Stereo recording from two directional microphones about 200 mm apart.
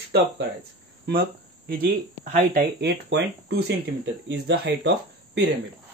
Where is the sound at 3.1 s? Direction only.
55° right (ahead or behind).